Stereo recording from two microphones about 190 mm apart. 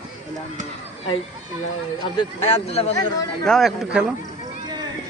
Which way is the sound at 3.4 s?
Centre (ahead or behind).